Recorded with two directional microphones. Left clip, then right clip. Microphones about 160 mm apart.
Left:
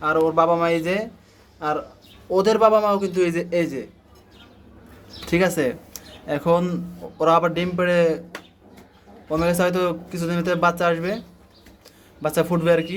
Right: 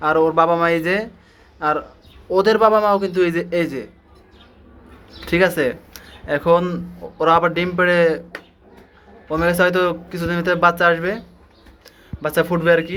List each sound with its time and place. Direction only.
0.0 s speech: centre (ahead or behind)
5.2 s speech: 15° left (ahead or behind)
9.3 s speech: 10° left (ahead or behind)
12.2 s speech: 15° left (ahead or behind)